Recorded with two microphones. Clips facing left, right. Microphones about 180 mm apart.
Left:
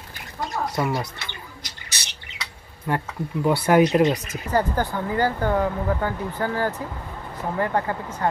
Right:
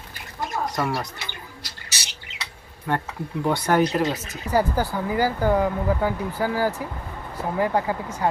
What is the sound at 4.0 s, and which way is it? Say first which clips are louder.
Speech: left 5 dB; 20° left (ahead or behind).